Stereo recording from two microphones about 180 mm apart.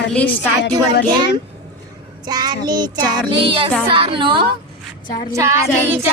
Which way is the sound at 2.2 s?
20° right (ahead or behind).